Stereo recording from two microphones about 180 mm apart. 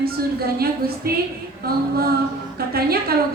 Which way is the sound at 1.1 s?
55° right (ahead or behind).